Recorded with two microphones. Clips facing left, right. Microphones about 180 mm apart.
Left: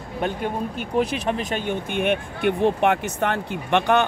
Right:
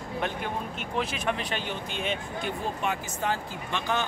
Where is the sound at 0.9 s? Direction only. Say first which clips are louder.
Left 7 dB; 40° left (ahead or behind).